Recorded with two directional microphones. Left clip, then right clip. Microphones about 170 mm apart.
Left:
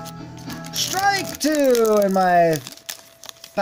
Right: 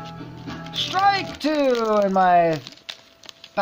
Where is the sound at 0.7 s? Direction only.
45° left (ahead or behind).